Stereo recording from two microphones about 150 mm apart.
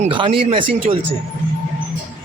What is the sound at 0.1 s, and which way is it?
Speech, 35° right (ahead or behind).